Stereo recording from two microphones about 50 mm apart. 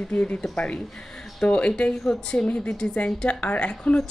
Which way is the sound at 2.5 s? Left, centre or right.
Left.